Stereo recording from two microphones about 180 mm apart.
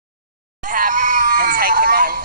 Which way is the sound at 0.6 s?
45° right (ahead or behind).